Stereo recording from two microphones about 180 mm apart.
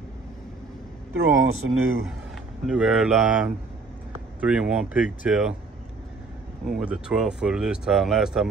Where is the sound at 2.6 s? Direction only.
5° right (ahead or behind).